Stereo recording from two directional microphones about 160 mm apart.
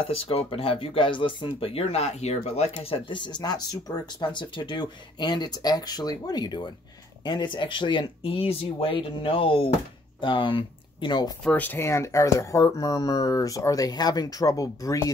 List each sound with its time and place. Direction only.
0.1 s speech: 35° left (ahead or behind)
11.4 s speech: 10° left (ahead or behind)